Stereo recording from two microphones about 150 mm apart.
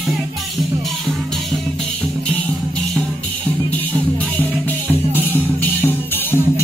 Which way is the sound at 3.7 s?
10° left (ahead or behind).